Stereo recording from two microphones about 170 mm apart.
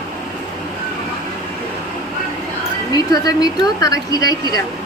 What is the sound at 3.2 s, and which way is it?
A woman's voice, 20° left (ahead or behind).